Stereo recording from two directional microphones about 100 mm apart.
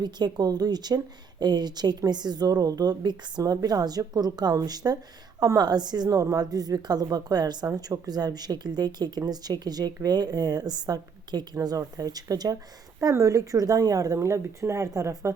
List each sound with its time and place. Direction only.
0.0 s a woman's voice: 45° right (ahead or behind)